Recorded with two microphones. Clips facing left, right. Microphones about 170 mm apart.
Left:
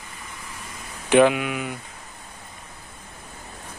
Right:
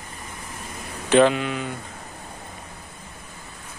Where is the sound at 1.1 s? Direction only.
10° left (ahead or behind).